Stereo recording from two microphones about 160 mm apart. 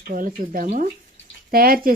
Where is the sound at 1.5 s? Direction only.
65° right (ahead or behind).